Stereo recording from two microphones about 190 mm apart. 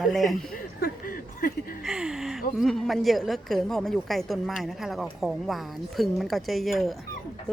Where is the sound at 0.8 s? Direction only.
50° left (ahead or behind).